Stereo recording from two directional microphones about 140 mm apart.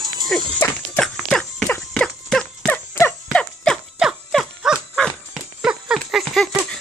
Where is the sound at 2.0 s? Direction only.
5° left (ahead or behind).